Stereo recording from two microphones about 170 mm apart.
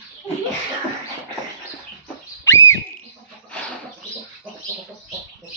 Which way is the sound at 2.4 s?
15° left (ahead or behind).